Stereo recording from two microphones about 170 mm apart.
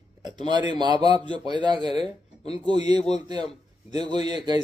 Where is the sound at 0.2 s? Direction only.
25° right (ahead or behind).